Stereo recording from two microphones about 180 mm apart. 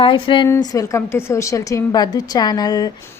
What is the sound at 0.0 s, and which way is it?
A woman's voice, 30° left (ahead or behind).